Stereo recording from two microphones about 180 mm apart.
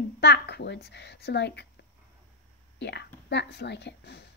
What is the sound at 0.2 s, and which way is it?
A woman's voice, 70° left (ahead or behind).